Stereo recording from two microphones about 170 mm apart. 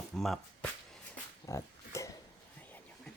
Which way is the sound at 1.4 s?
20° left (ahead or behind).